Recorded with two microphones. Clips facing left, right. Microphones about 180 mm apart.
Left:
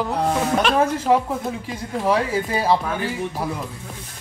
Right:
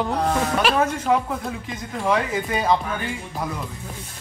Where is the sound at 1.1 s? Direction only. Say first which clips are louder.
Left 3 dB; 30° left (ahead or behind).